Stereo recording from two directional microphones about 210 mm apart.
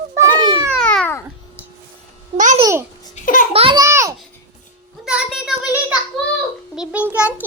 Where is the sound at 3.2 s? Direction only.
35° left (ahead or behind).